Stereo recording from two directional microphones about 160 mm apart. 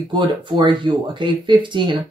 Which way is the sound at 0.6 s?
30° right (ahead or behind).